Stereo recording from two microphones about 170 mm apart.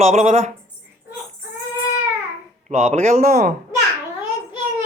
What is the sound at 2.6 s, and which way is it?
Speech, 40° right (ahead or behind).